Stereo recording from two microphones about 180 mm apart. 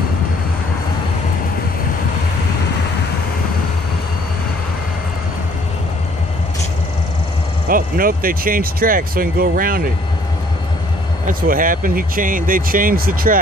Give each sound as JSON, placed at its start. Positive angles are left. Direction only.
{"t": 7.6, "sound": "speech", "side_deg": -55}
{"t": 11.2, "sound": "speech", "side_deg": -50}